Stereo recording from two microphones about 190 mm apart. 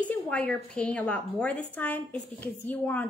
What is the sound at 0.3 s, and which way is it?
A woman's voice, 5° left (ahead or behind).